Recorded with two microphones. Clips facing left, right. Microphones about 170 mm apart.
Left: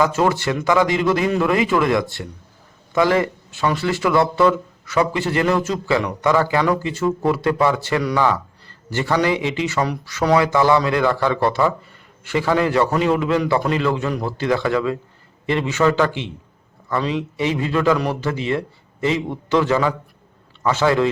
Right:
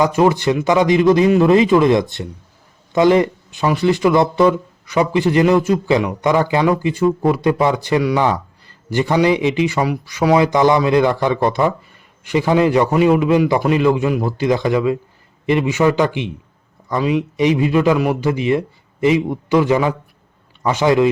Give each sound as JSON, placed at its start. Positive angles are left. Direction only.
{"t": 0.0, "sound": "a man's voice", "side_deg": -15}